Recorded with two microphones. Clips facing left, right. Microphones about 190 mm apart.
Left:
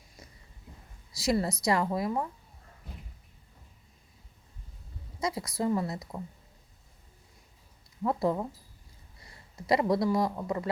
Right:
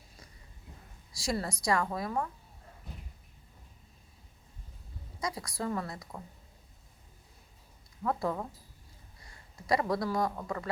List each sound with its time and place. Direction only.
1.2 s speech: 20° left (ahead or behind)
5.2 s speech: 25° left (ahead or behind)
8.0 s speech: 20° left (ahead or behind)
9.6 s speech: 25° left (ahead or behind)